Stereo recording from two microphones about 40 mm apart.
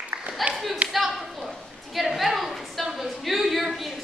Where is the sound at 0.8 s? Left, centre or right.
Right.